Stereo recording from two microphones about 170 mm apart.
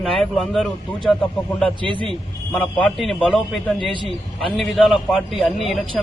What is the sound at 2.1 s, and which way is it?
A man's voice, 5° left (ahead or behind).